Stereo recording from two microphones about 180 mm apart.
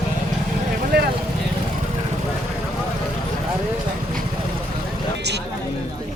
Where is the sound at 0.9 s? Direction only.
65° right (ahead or behind).